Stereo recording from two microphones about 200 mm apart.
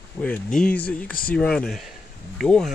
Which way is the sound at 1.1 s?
45° left (ahead or behind).